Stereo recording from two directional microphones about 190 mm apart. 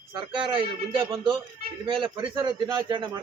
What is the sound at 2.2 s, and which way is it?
A man's voice, 20° right (ahead or behind).